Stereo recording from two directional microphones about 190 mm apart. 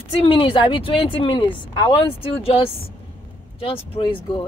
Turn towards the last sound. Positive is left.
turn(degrees=30)  # may be behind; listen again after turning